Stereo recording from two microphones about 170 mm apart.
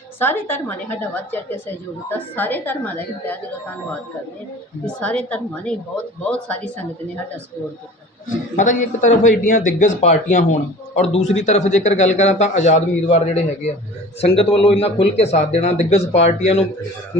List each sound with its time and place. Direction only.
0.2 s a woman's voice: 15° left (ahead or behind)
4.9 s a woman's voice: 5° left (ahead or behind)
8.5 s speech: 50° left (ahead or behind)